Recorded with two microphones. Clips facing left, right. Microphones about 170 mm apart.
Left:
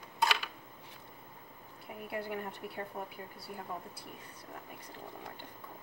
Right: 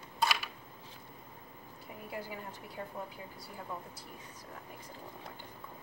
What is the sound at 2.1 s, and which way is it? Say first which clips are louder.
Speech: left 4 dB; 60° left (ahead or behind).